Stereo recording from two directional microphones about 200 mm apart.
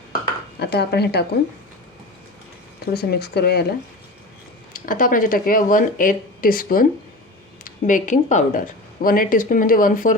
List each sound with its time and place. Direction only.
0.6 s speech: 55° left (ahead or behind)
2.8 s speech: 50° left (ahead or behind)
4.7 s speech: 45° left (ahead or behind)